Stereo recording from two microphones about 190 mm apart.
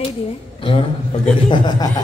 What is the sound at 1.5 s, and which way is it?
Speech, 20° left (ahead or behind).